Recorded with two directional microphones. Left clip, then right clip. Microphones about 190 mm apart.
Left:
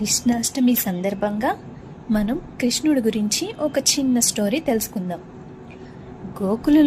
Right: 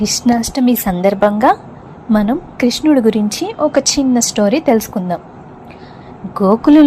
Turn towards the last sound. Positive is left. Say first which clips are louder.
# right 9 dB
turn(degrees=-15)  # may be behind; listen again after turning